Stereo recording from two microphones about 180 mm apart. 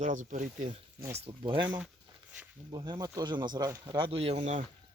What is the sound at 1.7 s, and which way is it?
Speech, 10° right (ahead or behind).